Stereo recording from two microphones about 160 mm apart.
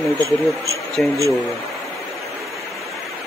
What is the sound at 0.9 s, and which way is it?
Speech, centre (ahead or behind).